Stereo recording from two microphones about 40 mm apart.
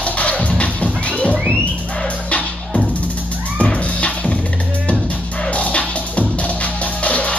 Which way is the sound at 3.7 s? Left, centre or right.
Left.